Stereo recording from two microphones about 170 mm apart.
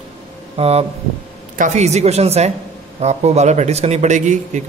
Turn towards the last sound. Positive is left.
turn(degrees=-45)  # may be behind; listen again after turning